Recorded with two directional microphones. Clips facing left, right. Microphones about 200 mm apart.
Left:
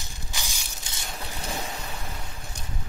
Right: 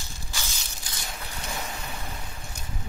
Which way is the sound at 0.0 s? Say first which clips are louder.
Even; 20° left (ahead or behind).